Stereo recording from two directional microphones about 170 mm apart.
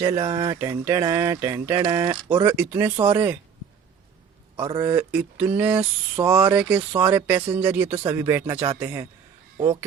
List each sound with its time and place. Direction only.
0.0 s speech: 20° right (ahead or behind)
2.3 s speech: 15° right (ahead or behind)
4.5 s a man's voice: 30° right (ahead or behind)
4.9 s speech: 10° right (ahead or behind)